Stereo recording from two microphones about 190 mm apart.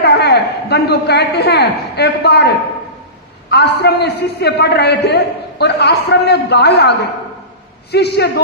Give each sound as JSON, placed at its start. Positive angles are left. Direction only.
{"t": 0.0, "sound": "a man's voice", "side_deg": 60}
{"t": 3.5, "sound": "a man's voice", "side_deg": 60}